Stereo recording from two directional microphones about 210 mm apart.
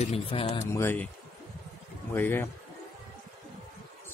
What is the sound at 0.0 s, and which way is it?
Speech, 25° left (ahead or behind).